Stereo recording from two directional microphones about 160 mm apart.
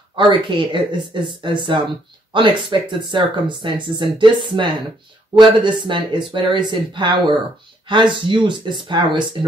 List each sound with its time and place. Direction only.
0.3 s speech: 30° right (ahead or behind)